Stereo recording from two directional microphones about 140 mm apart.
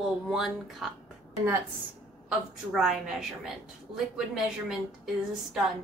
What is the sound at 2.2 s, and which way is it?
A woman's voice, 5° right (ahead or behind).